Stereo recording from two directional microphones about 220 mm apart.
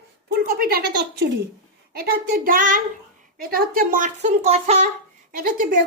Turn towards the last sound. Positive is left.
turn(degrees=-35)  # may be behind; listen again after turning